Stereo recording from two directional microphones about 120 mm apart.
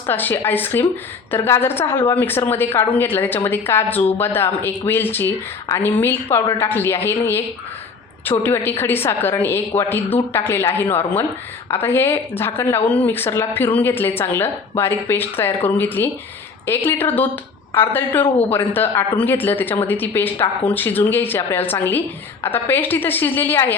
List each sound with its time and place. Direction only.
0.1 s a woman's voice: 15° left (ahead or behind)